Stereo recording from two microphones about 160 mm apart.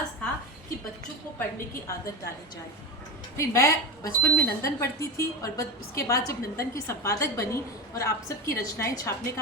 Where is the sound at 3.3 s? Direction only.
20° left (ahead or behind).